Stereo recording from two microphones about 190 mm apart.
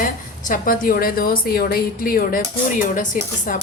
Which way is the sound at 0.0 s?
45° left (ahead or behind).